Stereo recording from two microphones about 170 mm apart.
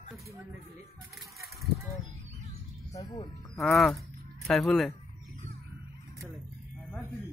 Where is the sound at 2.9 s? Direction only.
20° left (ahead or behind).